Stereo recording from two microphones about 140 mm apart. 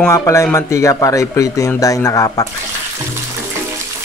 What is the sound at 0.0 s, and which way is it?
Speech, 20° left (ahead or behind).